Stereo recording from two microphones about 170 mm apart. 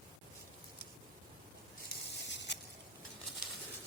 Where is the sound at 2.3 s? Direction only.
90° left.